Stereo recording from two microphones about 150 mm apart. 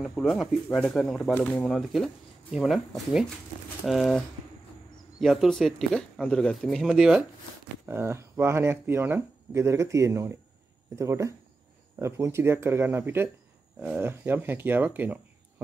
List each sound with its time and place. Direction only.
0.0 s speech: centre (ahead or behind)
5.2 s speech: centre (ahead or behind)
7.8 s speech: 15° right (ahead or behind)